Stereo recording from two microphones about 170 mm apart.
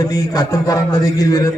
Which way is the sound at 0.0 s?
20° left (ahead or behind).